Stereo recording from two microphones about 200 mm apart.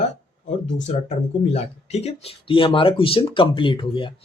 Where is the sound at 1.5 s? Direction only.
30° left (ahead or behind).